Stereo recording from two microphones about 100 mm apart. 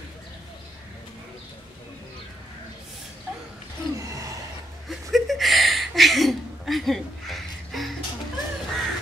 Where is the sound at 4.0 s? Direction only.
35° right (ahead or behind).